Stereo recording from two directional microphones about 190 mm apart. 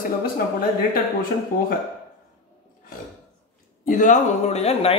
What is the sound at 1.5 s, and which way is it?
Speech, 45° left (ahead or behind).